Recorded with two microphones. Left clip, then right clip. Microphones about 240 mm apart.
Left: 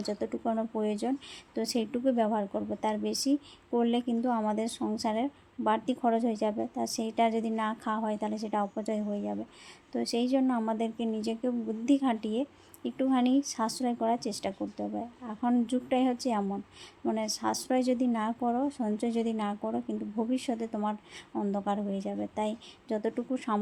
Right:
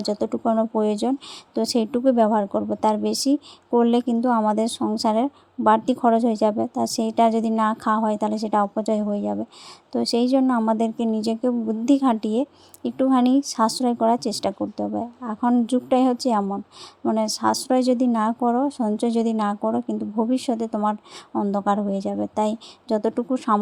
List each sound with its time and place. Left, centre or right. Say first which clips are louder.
0.0 s a woman's voice: right 9 dB; right